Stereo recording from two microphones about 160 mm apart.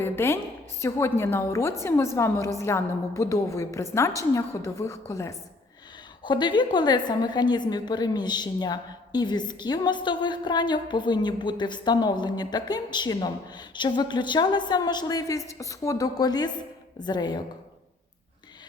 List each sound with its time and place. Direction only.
0.0 s a woman's voice: 15° left (ahead or behind)